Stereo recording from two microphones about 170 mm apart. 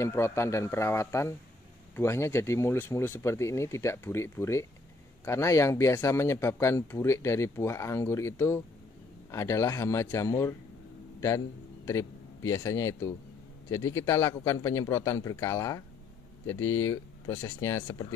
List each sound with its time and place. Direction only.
0.0 s a man's voice: 15° left (ahead or behind)